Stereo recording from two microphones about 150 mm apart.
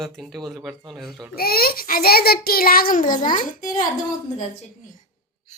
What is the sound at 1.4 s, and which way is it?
A child's voice, 90° left.